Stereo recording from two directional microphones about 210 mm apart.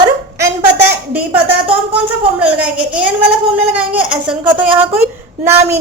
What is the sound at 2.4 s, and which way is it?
A woman's voice, 5° right (ahead or behind).